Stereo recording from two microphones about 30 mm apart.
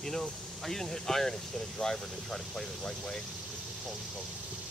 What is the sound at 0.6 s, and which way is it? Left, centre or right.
Speech, centre.